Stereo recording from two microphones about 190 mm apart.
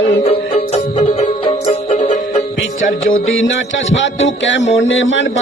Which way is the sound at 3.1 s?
90° left.